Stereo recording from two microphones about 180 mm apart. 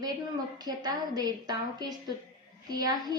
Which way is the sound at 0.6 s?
20° right (ahead or behind).